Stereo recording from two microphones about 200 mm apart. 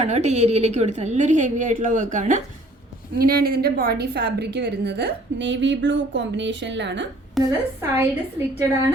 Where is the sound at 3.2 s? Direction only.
50° right (ahead or behind).